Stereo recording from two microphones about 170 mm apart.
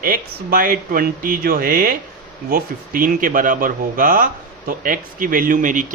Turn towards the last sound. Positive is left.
turn(degrees=-50)  # may be behind; listen again after turning